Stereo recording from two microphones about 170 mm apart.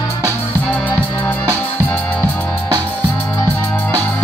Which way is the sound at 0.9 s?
10° left (ahead or behind).